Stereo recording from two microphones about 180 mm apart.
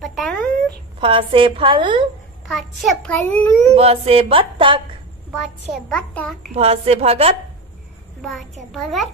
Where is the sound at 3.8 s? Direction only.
35° right (ahead or behind).